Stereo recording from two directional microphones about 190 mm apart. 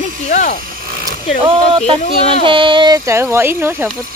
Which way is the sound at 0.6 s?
50° right (ahead or behind).